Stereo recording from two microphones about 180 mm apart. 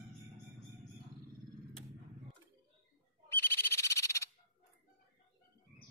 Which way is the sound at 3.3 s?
15° left (ahead or behind).